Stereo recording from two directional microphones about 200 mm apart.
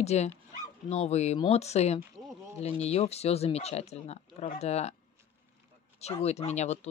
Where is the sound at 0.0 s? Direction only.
30° left (ahead or behind).